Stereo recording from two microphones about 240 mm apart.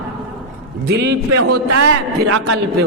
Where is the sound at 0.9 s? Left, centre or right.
Right.